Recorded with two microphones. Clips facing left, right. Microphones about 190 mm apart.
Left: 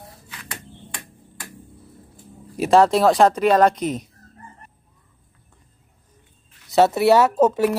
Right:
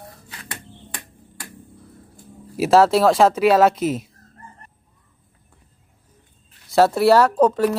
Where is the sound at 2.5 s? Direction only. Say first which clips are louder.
Right 1 dB; 5° right (ahead or behind).